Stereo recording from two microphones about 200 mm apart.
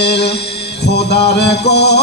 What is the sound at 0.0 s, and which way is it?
Music, 55° left (ahead or behind).